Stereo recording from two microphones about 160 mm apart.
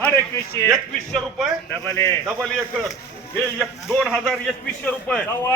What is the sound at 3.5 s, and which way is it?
A man's voice, centre (ahead or behind).